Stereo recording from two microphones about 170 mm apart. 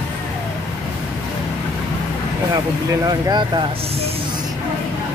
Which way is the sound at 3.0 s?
25° right (ahead or behind).